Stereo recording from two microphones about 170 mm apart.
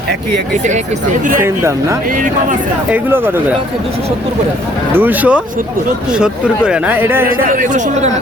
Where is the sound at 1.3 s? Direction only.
15° right (ahead or behind).